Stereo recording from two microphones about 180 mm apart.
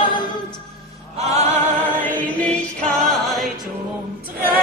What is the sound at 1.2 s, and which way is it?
Music, 40° right (ahead or behind).